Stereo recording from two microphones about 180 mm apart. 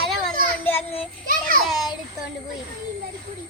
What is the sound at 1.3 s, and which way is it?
Speech, 50° right (ahead or behind).